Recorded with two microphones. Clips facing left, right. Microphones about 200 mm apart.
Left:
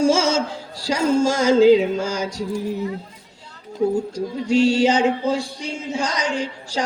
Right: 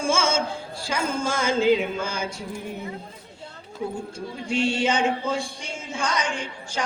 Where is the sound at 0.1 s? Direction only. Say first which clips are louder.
Left 5 dB; 40° left (ahead or behind).